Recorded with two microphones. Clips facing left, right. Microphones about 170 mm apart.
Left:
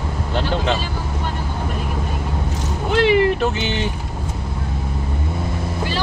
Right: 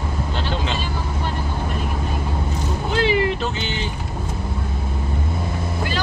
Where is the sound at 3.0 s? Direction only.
60° left (ahead or behind).